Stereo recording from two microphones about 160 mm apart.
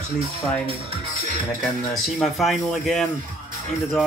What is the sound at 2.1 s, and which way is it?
Speech, centre (ahead or behind).